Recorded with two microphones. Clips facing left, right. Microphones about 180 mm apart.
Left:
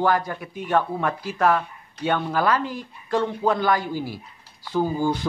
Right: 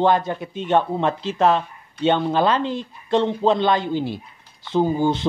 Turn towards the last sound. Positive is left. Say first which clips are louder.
# right 4 dB
turn(degrees=-20)  # may be behind; listen again after turning